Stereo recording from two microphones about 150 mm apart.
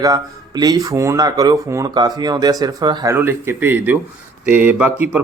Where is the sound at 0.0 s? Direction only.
25° right (ahead or behind).